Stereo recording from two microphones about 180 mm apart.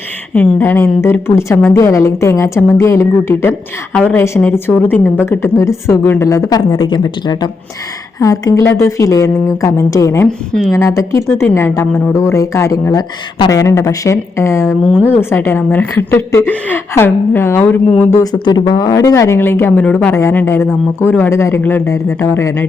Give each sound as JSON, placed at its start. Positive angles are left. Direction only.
{"t": 0.3, "sound": "a woman's voice", "side_deg": 10}
{"t": 10.2, "sound": "a woman's voice", "side_deg": 0}
{"t": 10.8, "sound": "a woman's voice", "side_deg": 15}